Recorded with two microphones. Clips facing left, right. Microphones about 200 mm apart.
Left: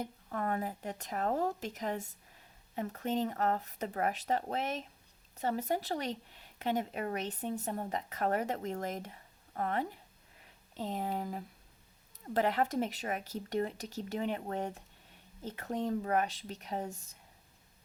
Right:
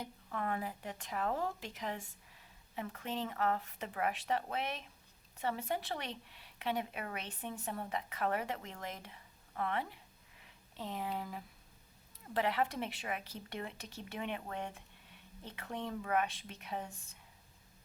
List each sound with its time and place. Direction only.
0.0 s a woman's voice: 40° left (ahead or behind)